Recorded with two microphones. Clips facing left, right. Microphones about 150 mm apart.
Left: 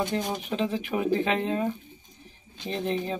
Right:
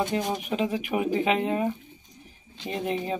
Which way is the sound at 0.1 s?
10° right (ahead or behind).